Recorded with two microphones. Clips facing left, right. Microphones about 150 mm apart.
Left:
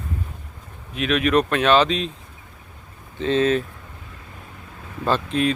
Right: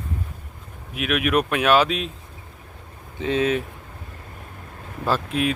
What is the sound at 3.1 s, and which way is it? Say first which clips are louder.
Speech: left 2 dB; 10° right (ahead or behind).